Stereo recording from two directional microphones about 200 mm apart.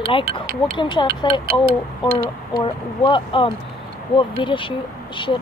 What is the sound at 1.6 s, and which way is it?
Speech, 45° right (ahead or behind).